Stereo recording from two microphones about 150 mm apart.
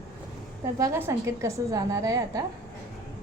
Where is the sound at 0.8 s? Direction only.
20° right (ahead or behind).